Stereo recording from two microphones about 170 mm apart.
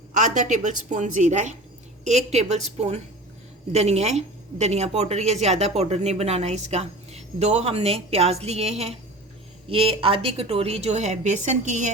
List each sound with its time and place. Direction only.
0.1 s a woman's voice: 45° right (ahead or behind)